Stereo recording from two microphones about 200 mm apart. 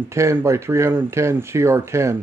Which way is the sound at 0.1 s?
15° right (ahead or behind).